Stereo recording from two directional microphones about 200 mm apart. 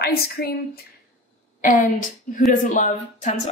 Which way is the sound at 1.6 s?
40° left (ahead or behind).